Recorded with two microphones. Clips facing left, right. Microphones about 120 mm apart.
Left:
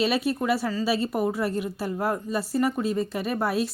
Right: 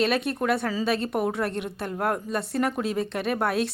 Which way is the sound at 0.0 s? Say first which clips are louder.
Even; 5° left (ahead or behind).